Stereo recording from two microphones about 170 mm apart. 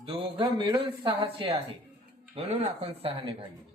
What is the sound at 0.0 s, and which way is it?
Speech, 30° right (ahead or behind).